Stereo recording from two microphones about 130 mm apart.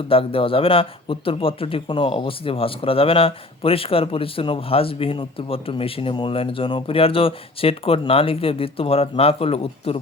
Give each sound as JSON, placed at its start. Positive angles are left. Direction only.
{"t": 0.1, "sound": "speech", "side_deg": 45}